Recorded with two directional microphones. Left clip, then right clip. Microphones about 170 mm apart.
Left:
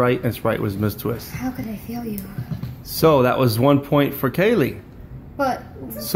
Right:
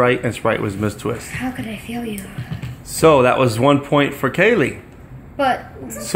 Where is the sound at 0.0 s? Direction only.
Centre (ahead or behind).